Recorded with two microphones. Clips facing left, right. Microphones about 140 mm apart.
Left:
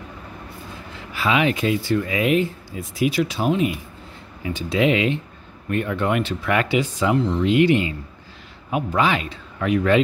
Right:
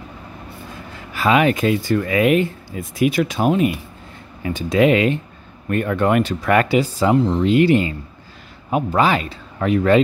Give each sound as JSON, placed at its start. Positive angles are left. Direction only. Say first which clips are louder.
{"t": 1.1, "sound": "speech", "louder": "right 4 dB", "side_deg": -45}